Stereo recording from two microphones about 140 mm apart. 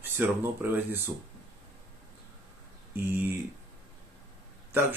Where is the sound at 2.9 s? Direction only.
15° right (ahead or behind).